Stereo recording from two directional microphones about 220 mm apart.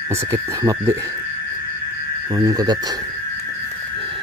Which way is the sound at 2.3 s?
15° right (ahead or behind).